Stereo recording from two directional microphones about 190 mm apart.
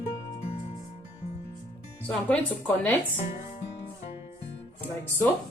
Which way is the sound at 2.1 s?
5° left (ahead or behind).